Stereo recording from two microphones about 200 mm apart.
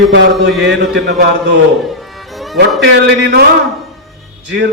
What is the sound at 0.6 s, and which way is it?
Speech, 55° right (ahead or behind).